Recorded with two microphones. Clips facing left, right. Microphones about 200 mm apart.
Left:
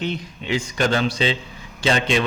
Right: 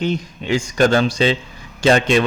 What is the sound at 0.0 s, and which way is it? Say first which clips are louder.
Speech: right 5 dB; 45° right (ahead or behind).